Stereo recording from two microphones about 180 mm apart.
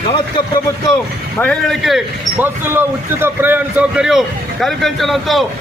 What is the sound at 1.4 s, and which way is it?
A man's voice, 5° left (ahead or behind).